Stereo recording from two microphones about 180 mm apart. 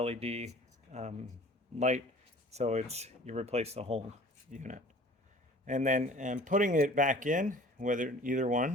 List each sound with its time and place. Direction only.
0.0 s speech: 35° right (ahead or behind)
2.5 s speech: 40° right (ahead or behind)